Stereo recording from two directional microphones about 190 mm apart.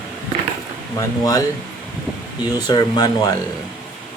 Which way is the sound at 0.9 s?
20° left (ahead or behind).